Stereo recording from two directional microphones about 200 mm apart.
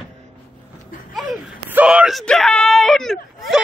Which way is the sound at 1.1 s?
5° right (ahead or behind).